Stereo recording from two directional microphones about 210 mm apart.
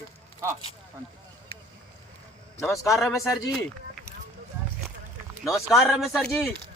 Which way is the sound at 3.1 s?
15° left (ahead or behind).